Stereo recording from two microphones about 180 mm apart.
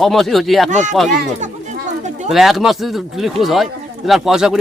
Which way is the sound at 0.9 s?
Centre (ahead or behind).